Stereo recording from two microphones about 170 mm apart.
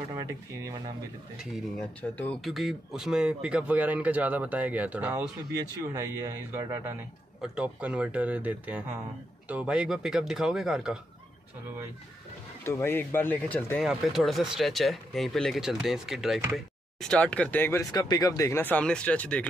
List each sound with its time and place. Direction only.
0.1 s speech: 20° right (ahead or behind)
1.4 s speech: centre (ahead or behind)
2.0 s speech: 10° left (ahead or behind); by 6.8 s 15° right (ahead or behind)
7.4 s speech: 5° right (ahead or behind)
12.6 s speech: 15° left (ahead or behind)
13.7 s speech: centre (ahead or behind)
17.9 s speech: 25° left (ahead or behind); by 19.4 s 5° left (ahead or behind)